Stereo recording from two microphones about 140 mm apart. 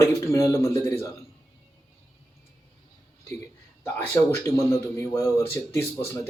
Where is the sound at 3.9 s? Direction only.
20° left (ahead or behind).